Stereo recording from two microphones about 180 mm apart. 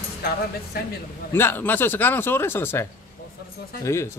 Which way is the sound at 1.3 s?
10° left (ahead or behind).